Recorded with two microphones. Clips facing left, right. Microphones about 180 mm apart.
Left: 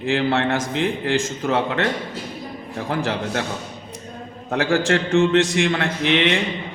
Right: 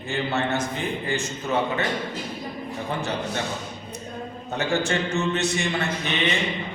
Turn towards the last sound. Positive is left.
turn(degrees=90)